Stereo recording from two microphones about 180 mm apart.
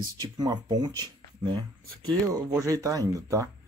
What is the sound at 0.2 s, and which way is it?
Speech, 20° right (ahead or behind).